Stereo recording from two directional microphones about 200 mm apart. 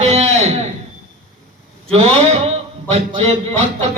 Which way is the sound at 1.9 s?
30° right (ahead or behind).